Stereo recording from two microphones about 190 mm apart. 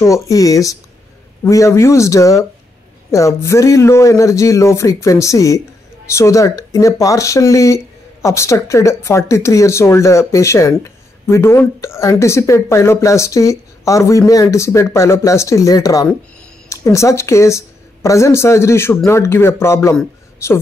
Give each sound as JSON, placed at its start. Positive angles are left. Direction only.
{"t": 0.0, "sound": "speech", "side_deg": 15}